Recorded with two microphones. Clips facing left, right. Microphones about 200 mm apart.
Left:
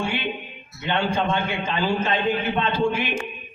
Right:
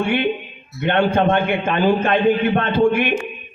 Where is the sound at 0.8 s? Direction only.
60° right (ahead or behind).